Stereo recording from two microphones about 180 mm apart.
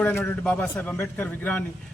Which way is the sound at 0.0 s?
10° left (ahead or behind).